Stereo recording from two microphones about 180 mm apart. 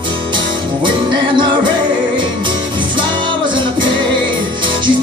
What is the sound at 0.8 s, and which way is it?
Music, 25° right (ahead or behind).